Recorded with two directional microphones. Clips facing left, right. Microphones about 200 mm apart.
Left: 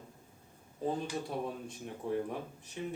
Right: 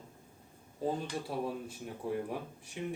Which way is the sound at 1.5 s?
5° right (ahead or behind).